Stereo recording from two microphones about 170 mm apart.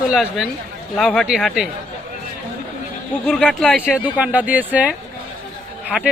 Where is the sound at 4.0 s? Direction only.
10° right (ahead or behind).